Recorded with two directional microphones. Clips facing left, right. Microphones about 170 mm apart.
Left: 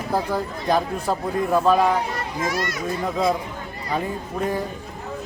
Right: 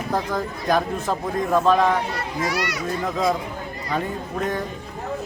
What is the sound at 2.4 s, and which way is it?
Speech, 50° left (ahead or behind).